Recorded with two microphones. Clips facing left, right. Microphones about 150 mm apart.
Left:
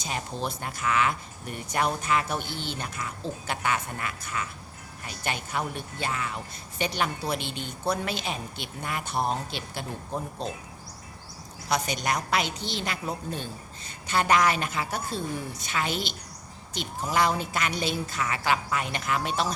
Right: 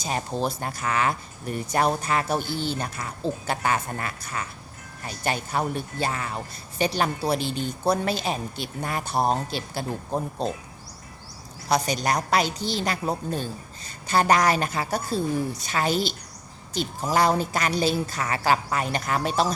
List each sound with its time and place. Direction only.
0.0 s a woman's voice: 35° right (ahead or behind)
11.7 s a woman's voice: 35° right (ahead or behind)